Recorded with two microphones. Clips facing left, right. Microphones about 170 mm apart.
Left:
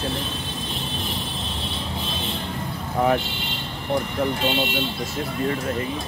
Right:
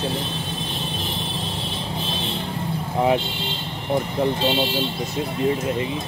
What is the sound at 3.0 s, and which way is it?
Speech, 25° right (ahead or behind).